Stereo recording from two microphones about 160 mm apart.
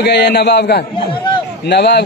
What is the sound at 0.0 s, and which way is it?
Speech, 90° left.